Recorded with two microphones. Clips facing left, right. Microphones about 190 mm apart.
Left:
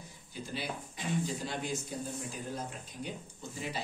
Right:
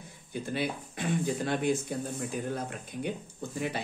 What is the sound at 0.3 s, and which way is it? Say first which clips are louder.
Speech: right 7 dB; 55° right (ahead or behind).